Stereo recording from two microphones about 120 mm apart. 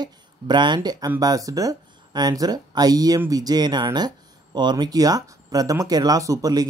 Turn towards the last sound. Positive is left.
turn(degrees=-30)  # may be behind; listen again after turning